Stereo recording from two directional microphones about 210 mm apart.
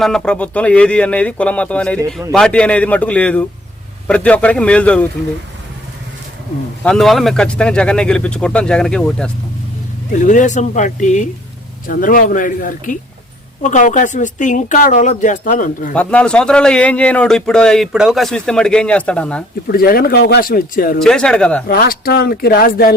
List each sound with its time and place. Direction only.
0.0 s a man's voice: 5° left (ahead or behind)
6.8 s a man's voice: centre (ahead or behind)
10.1 s speech: 35° left (ahead or behind)
16.0 s a man's voice: 5° left (ahead or behind)
19.6 s speech: 45° left (ahead or behind)
21.0 s a man's voice: 5° left (ahead or behind)
21.7 s speech: 45° left (ahead or behind)